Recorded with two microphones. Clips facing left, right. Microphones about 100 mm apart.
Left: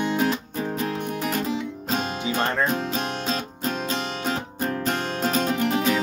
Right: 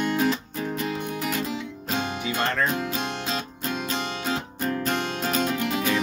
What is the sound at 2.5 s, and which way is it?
Music, 25° left (ahead or behind).